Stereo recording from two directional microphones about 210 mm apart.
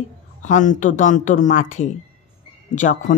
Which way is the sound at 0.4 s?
35° left (ahead or behind).